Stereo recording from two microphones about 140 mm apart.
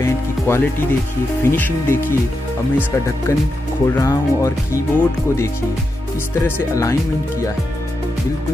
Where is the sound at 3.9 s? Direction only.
25° left (ahead or behind).